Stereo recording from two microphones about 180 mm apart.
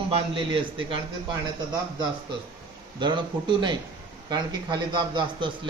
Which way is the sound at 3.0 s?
25° right (ahead or behind).